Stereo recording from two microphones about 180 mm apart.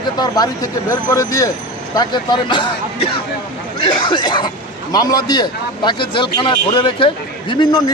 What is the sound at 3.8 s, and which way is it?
Speech, 25° left (ahead or behind).